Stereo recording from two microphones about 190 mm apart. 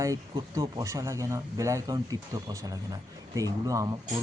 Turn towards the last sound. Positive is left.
turn(degrees=-20)  # may be behind; listen again after turning